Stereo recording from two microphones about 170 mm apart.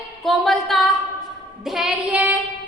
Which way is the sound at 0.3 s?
Centre (ahead or behind).